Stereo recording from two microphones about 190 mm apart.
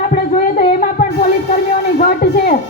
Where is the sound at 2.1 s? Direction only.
50° left (ahead or behind).